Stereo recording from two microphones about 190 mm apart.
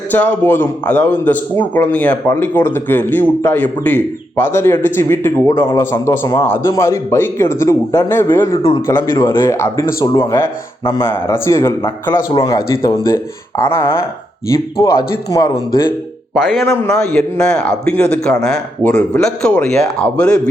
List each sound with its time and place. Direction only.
0.1 s a man's voice: 10° left (ahead or behind)
16.3 s speech: centre (ahead or behind)
16.6 s a man's voice: 15° left (ahead or behind)
17.0 s speech: 5° left (ahead or behind)